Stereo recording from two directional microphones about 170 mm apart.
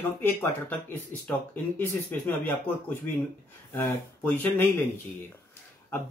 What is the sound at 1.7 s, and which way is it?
Speech, 10° left (ahead or behind).